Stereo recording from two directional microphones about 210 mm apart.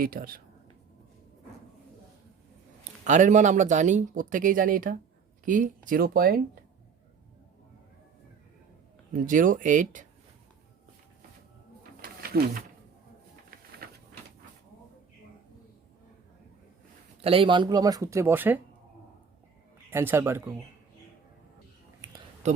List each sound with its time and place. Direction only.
0.0 s speech: 45° right (ahead or behind)
2.8 s speech: 35° right (ahead or behind)
9.1 s speech: 40° right (ahead or behind)
11.8 s a sound: 45° right (ahead or behind)
17.2 s speech: 25° right (ahead or behind); by 18.6 s 10° right (ahead or behind)
19.9 s speech: 10° right (ahead or behind)
22.4 s a sound: 35° right (ahead or behind)